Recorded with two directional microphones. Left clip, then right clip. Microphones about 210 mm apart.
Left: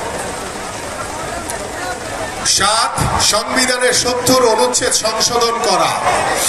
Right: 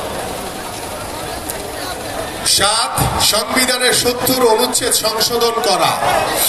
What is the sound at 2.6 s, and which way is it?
Speech, centre (ahead or behind).